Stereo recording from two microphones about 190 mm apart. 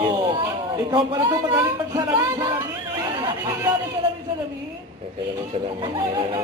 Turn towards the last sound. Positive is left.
turn(degrees=-20)  # may be behind; listen again after turning